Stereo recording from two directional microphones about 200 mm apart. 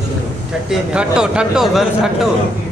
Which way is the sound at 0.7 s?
5° right (ahead or behind).